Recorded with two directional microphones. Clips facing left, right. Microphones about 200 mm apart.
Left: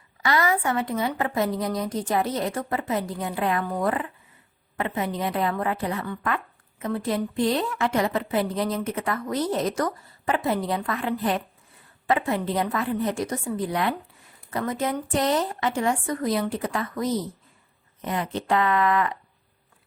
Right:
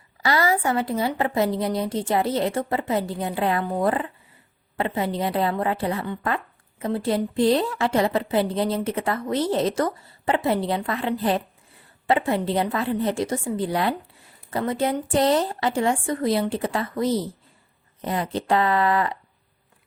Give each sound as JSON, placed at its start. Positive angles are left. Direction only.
{"t": 0.2, "sound": "a woman's voice", "side_deg": -30}